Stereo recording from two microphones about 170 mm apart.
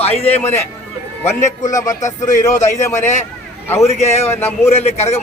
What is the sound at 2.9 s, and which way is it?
Speech, 45° left (ahead or behind).